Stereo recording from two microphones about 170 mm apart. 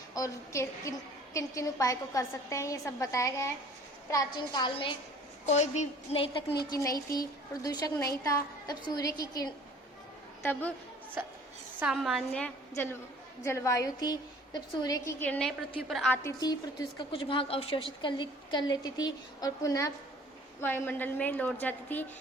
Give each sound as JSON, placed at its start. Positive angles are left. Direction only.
{"t": 0.1, "sound": "a woman's voice", "side_deg": 20}
{"t": 5.5, "sound": "a woman's voice", "side_deg": 40}
{"t": 6.7, "sound": "a woman's voice", "side_deg": 20}
{"t": 10.5, "sound": "a woman's voice", "side_deg": 10}
{"t": 11.8, "sound": "a woman's voice", "side_deg": -5}
{"t": 12.7, "sound": "a woman's voice", "side_deg": 15}
{"t": 15.2, "sound": "a woman's voice", "side_deg": 5}
{"t": 16.2, "sound": "a woman's voice", "side_deg": 25}